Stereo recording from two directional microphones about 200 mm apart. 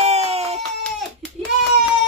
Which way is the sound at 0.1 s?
30° right (ahead or behind).